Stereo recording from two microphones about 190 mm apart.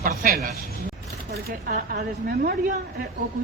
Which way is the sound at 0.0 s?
50° right (ahead or behind).